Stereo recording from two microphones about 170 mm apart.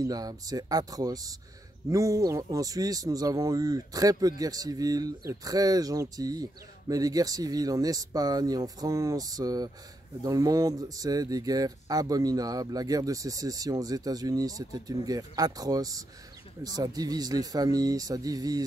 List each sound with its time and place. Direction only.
0.0 s speech: 20° right (ahead or behind)